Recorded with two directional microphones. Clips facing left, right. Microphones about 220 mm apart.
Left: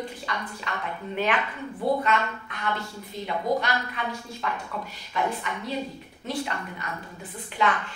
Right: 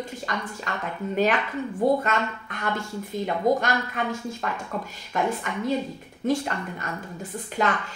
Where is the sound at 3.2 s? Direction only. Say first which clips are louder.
Right 3 dB; 45° right (ahead or behind).